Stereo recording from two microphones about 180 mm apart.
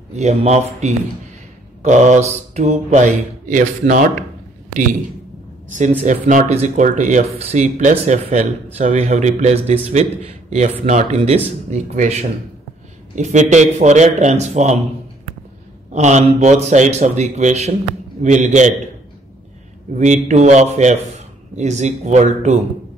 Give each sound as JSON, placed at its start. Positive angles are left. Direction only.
{"t": 0.1, "sound": "a man's voice", "side_deg": -35}
{"t": 5.7, "sound": "a man's voice", "side_deg": -45}
{"t": 15.9, "sound": "a man's voice", "side_deg": -40}
{"t": 20.0, "sound": "a man's voice", "side_deg": -40}